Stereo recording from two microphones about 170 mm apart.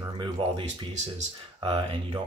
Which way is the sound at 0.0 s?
30° right (ahead or behind).